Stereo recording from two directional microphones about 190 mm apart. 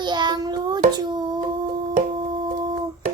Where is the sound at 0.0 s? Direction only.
25° right (ahead or behind).